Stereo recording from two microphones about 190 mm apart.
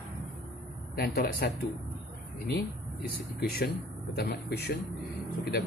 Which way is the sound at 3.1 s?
55° left (ahead or behind).